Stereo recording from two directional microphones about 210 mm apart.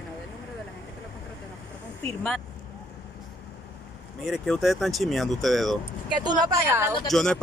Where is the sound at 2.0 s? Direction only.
5° left (ahead or behind).